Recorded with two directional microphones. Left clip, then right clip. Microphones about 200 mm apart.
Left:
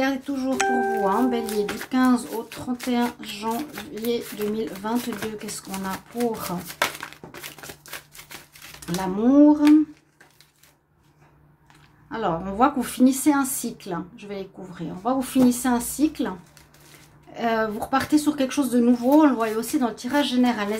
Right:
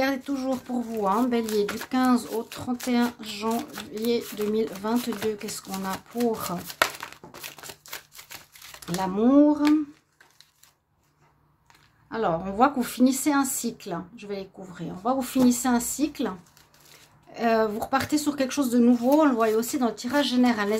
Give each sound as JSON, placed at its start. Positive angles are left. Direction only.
{"t": 0.0, "sound": "speech", "side_deg": -25}
{"t": 8.8, "sound": "speech", "side_deg": -20}
{"t": 12.1, "sound": "speech", "side_deg": -20}